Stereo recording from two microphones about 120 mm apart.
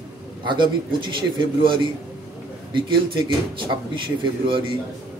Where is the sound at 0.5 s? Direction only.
40° right (ahead or behind).